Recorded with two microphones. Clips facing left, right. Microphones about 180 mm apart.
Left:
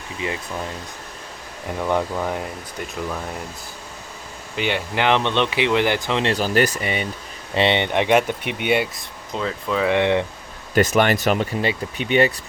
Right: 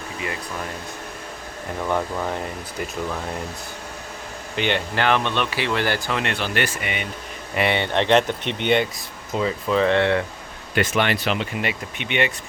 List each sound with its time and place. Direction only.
2.1 s speech: 5° left (ahead or behind)
4.5 s speech: 5° left (ahead or behind)
4.9 s speech: 20° left (ahead or behind)
6.3 s speech: 40° left (ahead or behind)
7.5 s speech: 25° left (ahead or behind); by 8.9 s 5° left (ahead or behind)
9.3 s speech: 5° right (ahead or behind)
9.9 s speech: 15° left (ahead or behind)
10.8 s speech: 40° left (ahead or behind)
11.6 s speech: 35° left (ahead or behind)